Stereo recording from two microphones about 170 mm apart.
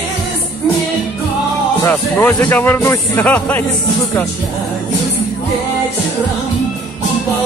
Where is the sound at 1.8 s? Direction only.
10° left (ahead or behind).